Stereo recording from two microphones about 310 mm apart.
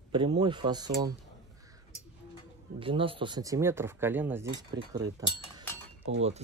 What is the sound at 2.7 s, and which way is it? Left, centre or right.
Speech, centre.